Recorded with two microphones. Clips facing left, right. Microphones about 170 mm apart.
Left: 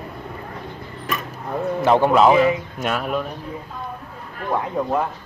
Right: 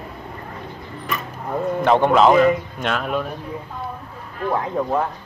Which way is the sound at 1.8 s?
5° left (ahead or behind).